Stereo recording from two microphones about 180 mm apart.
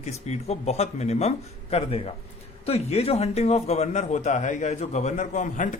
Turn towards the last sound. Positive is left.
turn(degrees=45)  # may be behind; listen again after turning